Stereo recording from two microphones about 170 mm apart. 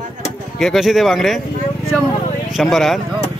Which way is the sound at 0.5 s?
Centre (ahead or behind).